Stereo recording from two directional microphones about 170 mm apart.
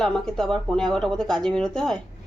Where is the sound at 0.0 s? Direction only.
5° left (ahead or behind).